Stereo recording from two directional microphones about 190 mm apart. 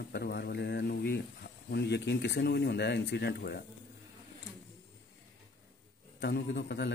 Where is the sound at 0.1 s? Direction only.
60° left (ahead or behind).